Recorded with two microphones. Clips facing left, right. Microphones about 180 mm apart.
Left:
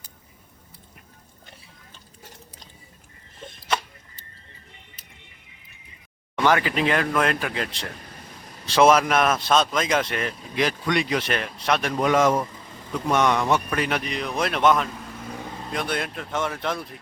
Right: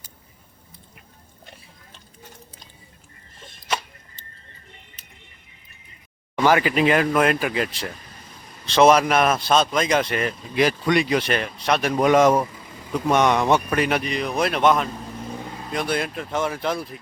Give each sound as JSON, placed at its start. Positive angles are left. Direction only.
{"t": 6.4, "sound": "speech", "side_deg": -10}
{"t": 8.6, "sound": "speech", "side_deg": 5}
{"t": 11.9, "sound": "speech", "side_deg": -20}
{"t": 13.7, "sound": "speech", "side_deg": -5}